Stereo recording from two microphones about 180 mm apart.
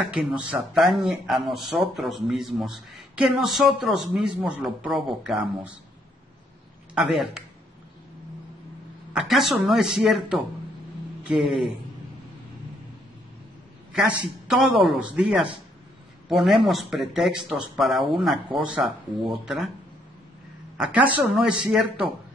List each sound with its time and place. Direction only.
0.1 s speech: 5° right (ahead or behind)
7.0 s speech: 5° right (ahead or behind)
9.1 s speech: 5° right (ahead or behind)
13.9 s speech: 5° right (ahead or behind)
20.7 s speech: 5° right (ahead or behind)